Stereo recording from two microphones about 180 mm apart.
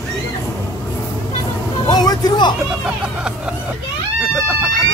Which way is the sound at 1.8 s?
20° left (ahead or behind).